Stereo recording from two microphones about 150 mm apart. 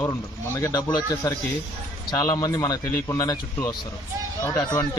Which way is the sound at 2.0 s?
25° left (ahead or behind).